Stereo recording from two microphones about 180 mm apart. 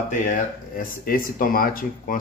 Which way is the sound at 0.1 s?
45° left (ahead or behind).